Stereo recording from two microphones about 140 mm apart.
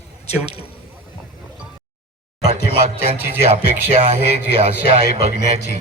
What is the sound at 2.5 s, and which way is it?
A man's voice, 45° right (ahead or behind).